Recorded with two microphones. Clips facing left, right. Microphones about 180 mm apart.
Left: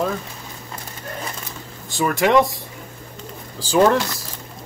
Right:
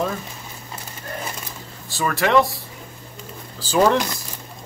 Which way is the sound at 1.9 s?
15° left (ahead or behind).